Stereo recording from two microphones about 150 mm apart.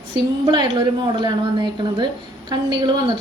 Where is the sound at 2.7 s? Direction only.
30° right (ahead or behind).